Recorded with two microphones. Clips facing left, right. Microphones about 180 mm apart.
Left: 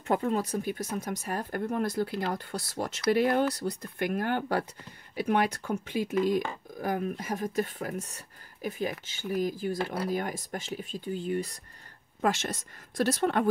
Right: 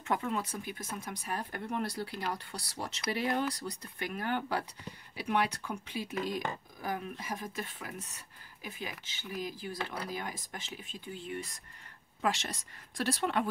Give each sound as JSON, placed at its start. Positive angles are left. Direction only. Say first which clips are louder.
{"t": 0.1, "sound": "speech", "louder": "left 6 dB", "side_deg": 40}